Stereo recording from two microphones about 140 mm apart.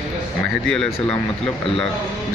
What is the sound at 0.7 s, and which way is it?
Speech, centre (ahead or behind).